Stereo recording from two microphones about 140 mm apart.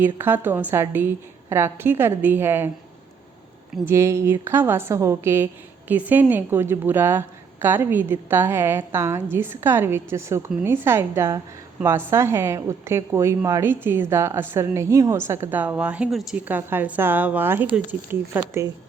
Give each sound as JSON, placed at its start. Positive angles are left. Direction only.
{"t": 0.0, "sound": "a woman's voice", "side_deg": -15}
{"t": 3.8, "sound": "a woman's voice", "side_deg": -20}
{"t": 18.3, "sound": "a woman's voice", "side_deg": -25}